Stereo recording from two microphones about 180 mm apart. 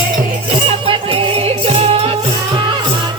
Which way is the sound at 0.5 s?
30° right (ahead or behind).